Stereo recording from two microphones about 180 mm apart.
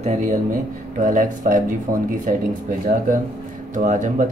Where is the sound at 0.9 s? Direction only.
45° right (ahead or behind).